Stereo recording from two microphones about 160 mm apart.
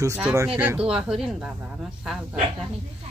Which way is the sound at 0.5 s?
10° right (ahead or behind).